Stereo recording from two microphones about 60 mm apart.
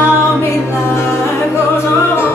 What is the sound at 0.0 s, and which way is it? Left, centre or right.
A capella, left.